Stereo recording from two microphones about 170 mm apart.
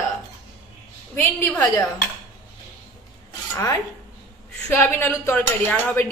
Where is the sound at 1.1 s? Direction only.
15° left (ahead or behind).